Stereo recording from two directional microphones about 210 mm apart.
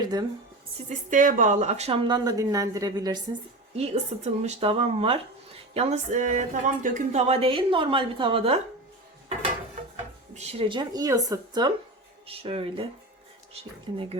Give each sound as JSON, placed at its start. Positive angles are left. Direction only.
{"t": 0.0, "sound": "speech", "side_deg": -20}
{"t": 0.9, "sound": "speech", "side_deg": -40}
{"t": 3.8, "sound": "speech", "side_deg": -30}
{"t": 10.0, "sound": "speech", "side_deg": -30}
{"t": 13.9, "sound": "speech", "side_deg": -25}